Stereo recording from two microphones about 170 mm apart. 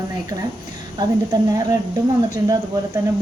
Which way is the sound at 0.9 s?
25° right (ahead or behind).